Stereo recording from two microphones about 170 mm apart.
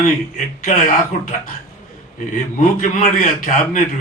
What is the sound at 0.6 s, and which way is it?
Speech, 50° left (ahead or behind).